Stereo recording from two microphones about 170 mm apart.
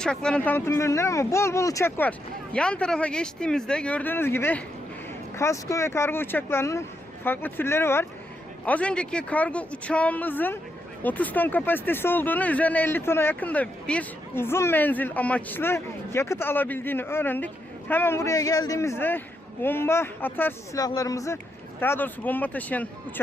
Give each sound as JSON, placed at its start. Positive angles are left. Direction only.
{"t": 0.0, "sound": "speech", "side_deg": 5}